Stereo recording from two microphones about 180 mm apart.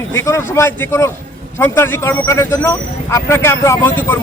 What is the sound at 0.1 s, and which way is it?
Speech, 15° left (ahead or behind).